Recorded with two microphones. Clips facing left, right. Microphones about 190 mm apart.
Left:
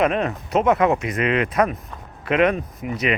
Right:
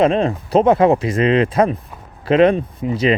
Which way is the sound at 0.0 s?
30° right (ahead or behind).